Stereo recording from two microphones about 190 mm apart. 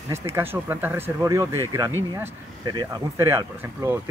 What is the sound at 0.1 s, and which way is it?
Speech, 15° right (ahead or behind).